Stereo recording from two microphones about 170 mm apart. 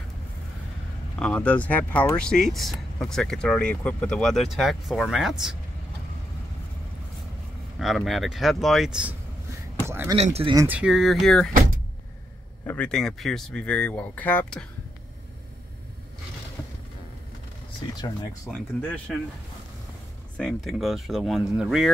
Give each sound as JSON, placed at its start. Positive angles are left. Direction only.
{"t": 1.2, "sound": "speech", "side_deg": 10}
{"t": 7.8, "sound": "speech", "side_deg": 0}
{"t": 9.8, "sound": "speech", "side_deg": -15}
{"t": 10.1, "sound": "speech", "side_deg": -40}
{"t": 10.5, "sound": "speech", "side_deg": -20}
{"t": 10.8, "sound": "speech", "side_deg": 0}
{"t": 12.6, "sound": "speech", "side_deg": 5}
{"t": 18.5, "sound": "speech", "side_deg": 10}
{"t": 20.3, "sound": "speech", "side_deg": 0}